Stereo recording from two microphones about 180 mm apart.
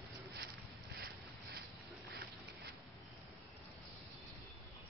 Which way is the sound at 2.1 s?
60° right (ahead or behind).